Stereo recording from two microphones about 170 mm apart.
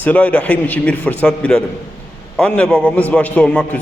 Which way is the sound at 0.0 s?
10° left (ahead or behind).